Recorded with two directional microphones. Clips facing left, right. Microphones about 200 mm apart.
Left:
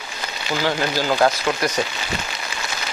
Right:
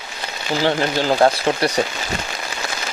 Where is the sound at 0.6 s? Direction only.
25° right (ahead or behind).